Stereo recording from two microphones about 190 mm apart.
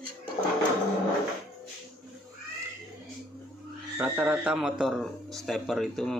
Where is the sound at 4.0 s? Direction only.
10° right (ahead or behind).